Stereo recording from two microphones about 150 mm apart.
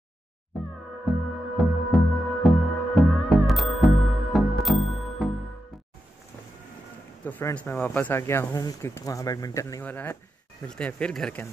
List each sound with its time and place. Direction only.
1.1 s music: centre (ahead or behind)
7.2 s speech: 10° left (ahead or behind)